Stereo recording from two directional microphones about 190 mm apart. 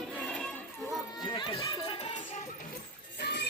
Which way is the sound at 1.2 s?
25° left (ahead or behind).